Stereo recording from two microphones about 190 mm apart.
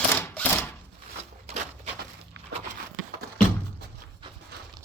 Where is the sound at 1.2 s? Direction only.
35° right (ahead or behind).